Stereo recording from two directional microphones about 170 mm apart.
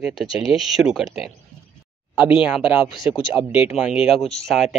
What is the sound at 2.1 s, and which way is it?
Speech, 30° left (ahead or behind).